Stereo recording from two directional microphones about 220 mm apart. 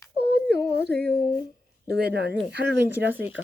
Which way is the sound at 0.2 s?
50° right (ahead or behind).